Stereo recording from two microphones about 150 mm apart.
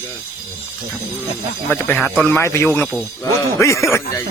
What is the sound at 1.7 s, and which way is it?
Speech, 15° left (ahead or behind).